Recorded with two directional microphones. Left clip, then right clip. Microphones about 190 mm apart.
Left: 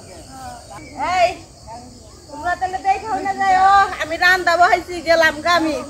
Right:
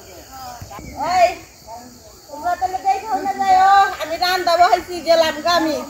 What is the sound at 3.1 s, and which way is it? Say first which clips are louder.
A woman's voice: right 2 dB; 5° right (ahead or behind).